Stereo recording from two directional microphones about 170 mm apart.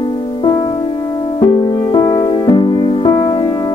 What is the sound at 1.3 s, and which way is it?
Music, 25° left (ahead or behind).